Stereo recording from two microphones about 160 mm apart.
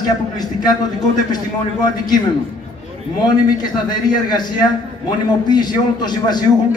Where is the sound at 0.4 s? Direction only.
25° left (ahead or behind).